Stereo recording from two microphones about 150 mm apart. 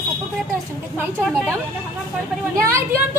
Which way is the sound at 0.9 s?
15° right (ahead or behind).